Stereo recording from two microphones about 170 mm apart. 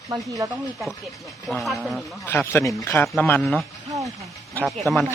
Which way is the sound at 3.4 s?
Centre (ahead or behind).